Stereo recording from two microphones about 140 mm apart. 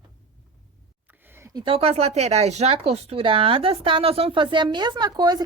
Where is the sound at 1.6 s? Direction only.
45° right (ahead or behind).